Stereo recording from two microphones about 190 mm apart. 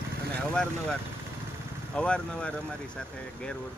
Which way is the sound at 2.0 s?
5° left (ahead or behind).